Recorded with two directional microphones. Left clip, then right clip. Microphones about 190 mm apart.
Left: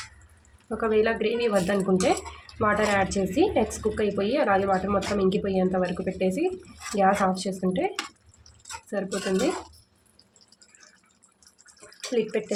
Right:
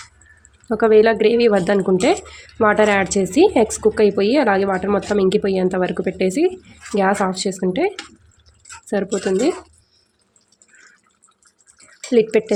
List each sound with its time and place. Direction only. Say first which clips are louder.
0.7 s a woman's voice: right 10 dB; 50° right (ahead or behind)
12.1 s speech: right 11 dB; 55° right (ahead or behind)